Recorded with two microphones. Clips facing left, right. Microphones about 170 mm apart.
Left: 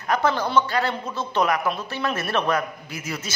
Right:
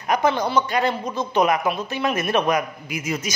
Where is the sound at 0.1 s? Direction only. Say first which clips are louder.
Right 1 dB; 15° right (ahead or behind).